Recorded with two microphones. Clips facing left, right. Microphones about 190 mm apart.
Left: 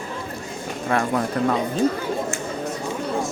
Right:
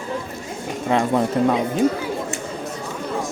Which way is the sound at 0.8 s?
20° right (ahead or behind).